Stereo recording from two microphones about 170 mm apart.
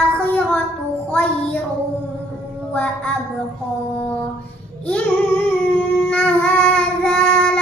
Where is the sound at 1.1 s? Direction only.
10° left (ahead or behind).